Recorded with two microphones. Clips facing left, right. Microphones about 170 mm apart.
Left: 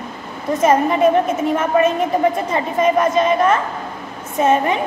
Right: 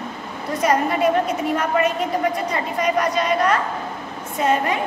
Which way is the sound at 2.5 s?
25° left (ahead or behind).